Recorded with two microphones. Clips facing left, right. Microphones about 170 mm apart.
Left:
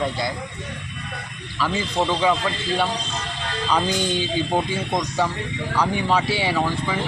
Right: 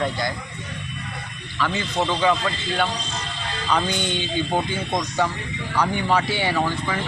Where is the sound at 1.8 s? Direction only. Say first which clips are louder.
Left 1 dB; 10° left (ahead or behind).